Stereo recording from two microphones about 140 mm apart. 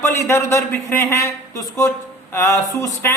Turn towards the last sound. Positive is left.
turn(degrees=20)  # may be behind; listen again after turning